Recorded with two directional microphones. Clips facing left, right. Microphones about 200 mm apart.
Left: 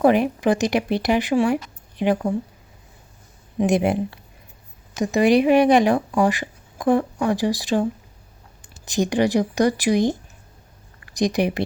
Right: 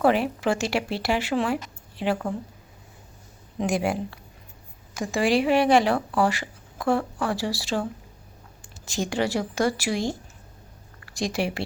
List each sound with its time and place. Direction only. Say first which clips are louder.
0.0 s speech: left 4 dB; 15° left (ahead or behind)
3.6 s speech: left 6 dB; 20° left (ahead or behind)